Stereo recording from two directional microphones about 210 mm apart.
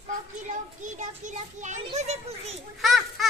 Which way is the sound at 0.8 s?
35° right (ahead or behind).